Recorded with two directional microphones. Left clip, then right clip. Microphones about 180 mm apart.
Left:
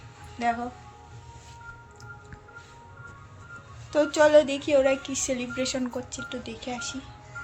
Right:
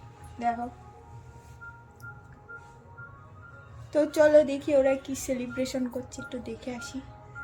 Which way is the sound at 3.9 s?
10° right (ahead or behind).